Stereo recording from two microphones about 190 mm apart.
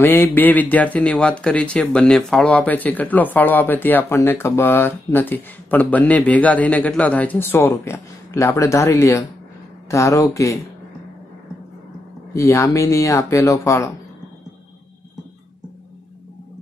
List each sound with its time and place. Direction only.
0.0 s speech: 10° left (ahead or behind)
12.4 s speech: 15° left (ahead or behind)